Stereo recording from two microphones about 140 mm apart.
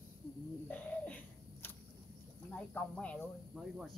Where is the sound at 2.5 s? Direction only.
10° left (ahead or behind).